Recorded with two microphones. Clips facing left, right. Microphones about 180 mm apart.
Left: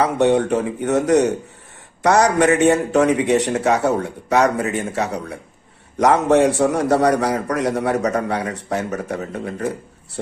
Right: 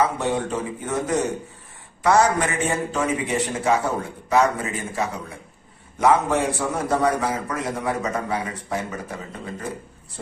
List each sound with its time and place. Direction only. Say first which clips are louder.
0.0 s a man's voice: left 6 dB; 70° left (ahead or behind)